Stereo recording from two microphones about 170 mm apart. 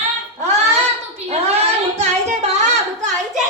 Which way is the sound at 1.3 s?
40° right (ahead or behind).